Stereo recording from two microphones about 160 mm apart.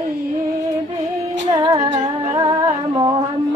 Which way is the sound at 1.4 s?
25° right (ahead or behind).